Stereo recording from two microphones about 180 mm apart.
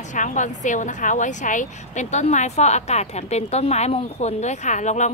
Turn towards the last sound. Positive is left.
turn(degrees=40)  # may be behind; listen again after turning